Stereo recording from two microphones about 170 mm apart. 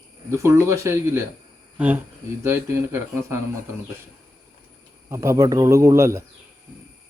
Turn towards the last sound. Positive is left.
turn(degrees=-15)  # may be behind; listen again after turning